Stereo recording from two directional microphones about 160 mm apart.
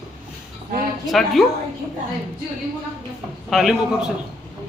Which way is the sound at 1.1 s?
Centre (ahead or behind).